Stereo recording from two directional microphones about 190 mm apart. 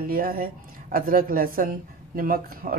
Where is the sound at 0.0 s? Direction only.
50° right (ahead or behind).